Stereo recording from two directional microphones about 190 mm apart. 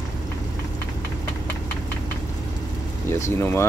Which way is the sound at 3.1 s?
15° left (ahead or behind).